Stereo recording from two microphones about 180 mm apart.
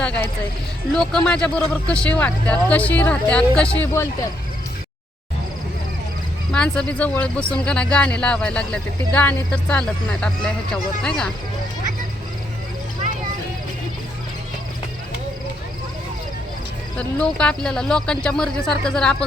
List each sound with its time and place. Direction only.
0.0 s speech: 5° left (ahead or behind)
6.5 s speech: 5° left (ahead or behind)
17.0 s speech: 5° left (ahead or behind)